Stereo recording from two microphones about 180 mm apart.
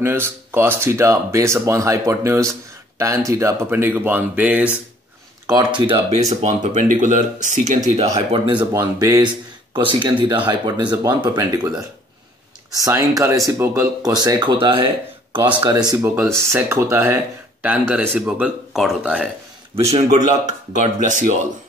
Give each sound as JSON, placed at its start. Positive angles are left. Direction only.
{"t": 0.0, "sound": "speech", "side_deg": -15}
{"t": 5.5, "sound": "speech", "side_deg": -25}
{"t": 9.0, "sound": "speech", "side_deg": -20}
{"t": 19.7, "sound": "speech", "side_deg": -35}